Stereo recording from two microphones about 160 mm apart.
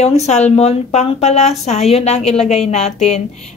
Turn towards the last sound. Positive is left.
turn(degrees=40)  # may be behind; listen again after turning